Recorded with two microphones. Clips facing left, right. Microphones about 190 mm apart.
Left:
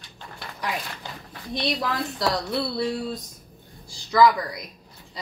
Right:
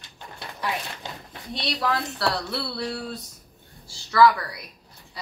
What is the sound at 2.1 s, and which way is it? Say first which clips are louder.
A woman's voice: left 2 dB; 15° left (ahead or behind).